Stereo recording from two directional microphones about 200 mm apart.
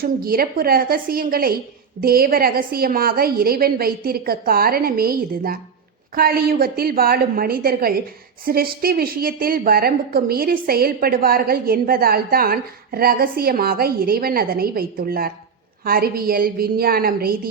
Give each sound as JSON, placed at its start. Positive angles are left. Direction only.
{"t": 0.0, "sound": "a woman's voice", "side_deg": -45}